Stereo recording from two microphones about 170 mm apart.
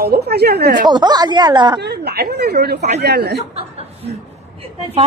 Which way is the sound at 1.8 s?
70° right (ahead or behind).